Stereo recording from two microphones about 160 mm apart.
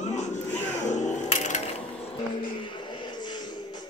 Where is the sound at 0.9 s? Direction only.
50° left (ahead or behind).